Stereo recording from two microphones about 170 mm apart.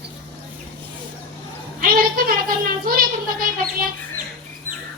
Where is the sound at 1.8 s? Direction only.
60° right (ahead or behind).